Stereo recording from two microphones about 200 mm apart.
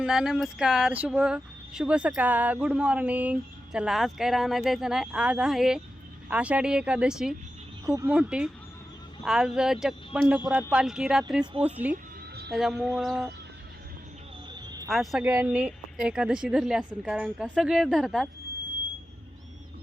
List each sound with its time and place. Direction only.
0.0 s speech: centre (ahead or behind)
14.5 s a sound: 20° right (ahead or behind)
14.8 s speech: centre (ahead or behind)